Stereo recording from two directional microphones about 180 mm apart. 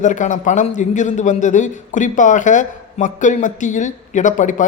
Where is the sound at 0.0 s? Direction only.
45° left (ahead or behind).